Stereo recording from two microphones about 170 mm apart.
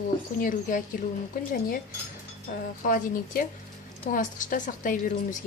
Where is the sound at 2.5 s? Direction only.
55° left (ahead or behind).